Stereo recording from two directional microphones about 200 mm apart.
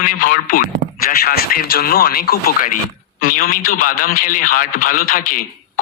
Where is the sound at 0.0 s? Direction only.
45° left (ahead or behind).